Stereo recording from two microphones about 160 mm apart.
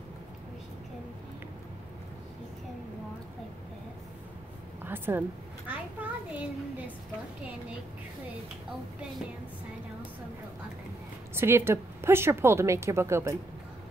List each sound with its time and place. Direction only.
4.8 s a woman's voice: 15° right (ahead or behind)
5.7 s a sound: 10° right (ahead or behind)
11.3 s a woman's voice: 15° right (ahead or behind)